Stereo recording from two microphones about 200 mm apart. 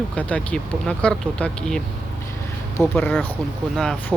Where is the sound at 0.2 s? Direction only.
5° left (ahead or behind).